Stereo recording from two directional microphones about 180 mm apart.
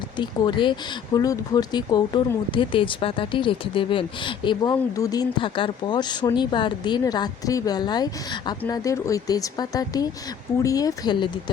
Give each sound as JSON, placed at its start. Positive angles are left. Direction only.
{"t": 0.2, "sound": "speech", "side_deg": 25}